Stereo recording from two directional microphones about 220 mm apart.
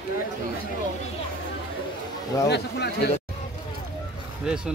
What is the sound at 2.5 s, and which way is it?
Speech, 50° left (ahead or behind).